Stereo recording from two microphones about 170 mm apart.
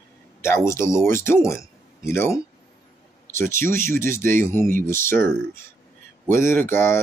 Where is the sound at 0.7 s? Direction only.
15° left (ahead or behind).